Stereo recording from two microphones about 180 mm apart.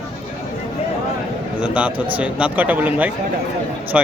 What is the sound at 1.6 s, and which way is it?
A man's voice, 5° right (ahead or behind).